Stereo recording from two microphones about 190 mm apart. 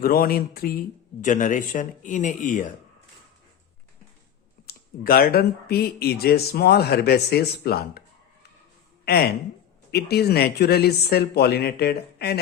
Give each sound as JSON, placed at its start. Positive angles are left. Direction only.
{"t": 0.0, "sound": "speech", "side_deg": 50}
{"t": 4.6, "sound": "speech", "side_deg": 50}
{"t": 9.0, "sound": "speech", "side_deg": 55}